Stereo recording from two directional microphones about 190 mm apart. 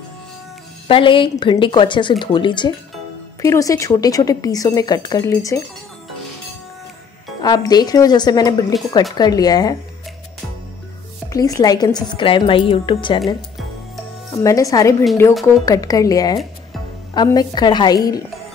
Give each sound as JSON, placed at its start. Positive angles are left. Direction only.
{"t": 0.8, "sound": "a woman's voice", "side_deg": 25}
{"t": 7.4, "sound": "a woman's voice", "side_deg": 20}
{"t": 11.3, "sound": "a woman's voice", "side_deg": 20}
{"t": 14.3, "sound": "a woman's voice", "side_deg": 15}